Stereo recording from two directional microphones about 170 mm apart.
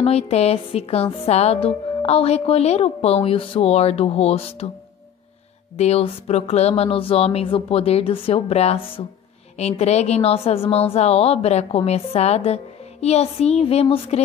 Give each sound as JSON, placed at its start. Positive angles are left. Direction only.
{"t": 0.0, "sound": "speech", "side_deg": 40}
{"t": 5.8, "sound": "speech", "side_deg": 35}